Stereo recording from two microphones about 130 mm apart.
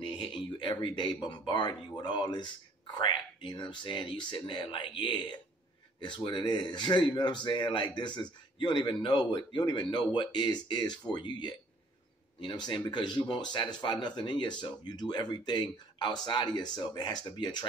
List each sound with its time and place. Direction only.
0.0 s speech: 40° left (ahead or behind)